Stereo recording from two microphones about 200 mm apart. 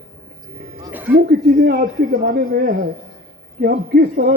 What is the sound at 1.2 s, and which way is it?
Speech, 50° right (ahead or behind).